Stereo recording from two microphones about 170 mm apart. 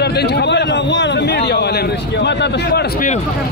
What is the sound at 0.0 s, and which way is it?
A man's voice, 90° left.